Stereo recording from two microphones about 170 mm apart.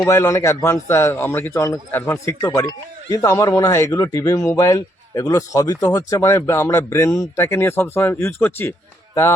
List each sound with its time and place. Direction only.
0.1 s speech: 20° left (ahead or behind)